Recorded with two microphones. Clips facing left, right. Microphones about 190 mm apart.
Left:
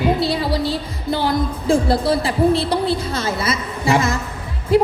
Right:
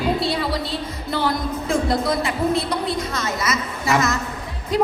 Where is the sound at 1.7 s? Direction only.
30° left (ahead or behind).